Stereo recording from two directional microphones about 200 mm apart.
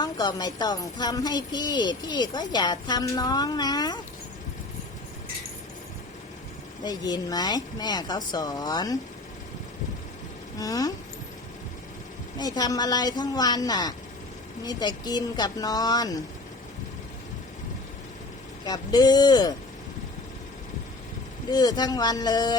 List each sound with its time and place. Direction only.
0.0 s speech: 20° left (ahead or behind)
6.8 s speech: 20° left (ahead or behind)
10.6 s a sound: 15° left (ahead or behind)
12.4 s speech: 20° left (ahead or behind)
18.6 s speech: 20° left (ahead or behind)
21.5 s speech: 20° left (ahead or behind)